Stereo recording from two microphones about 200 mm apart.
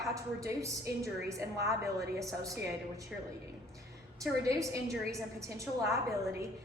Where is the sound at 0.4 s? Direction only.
15° right (ahead or behind).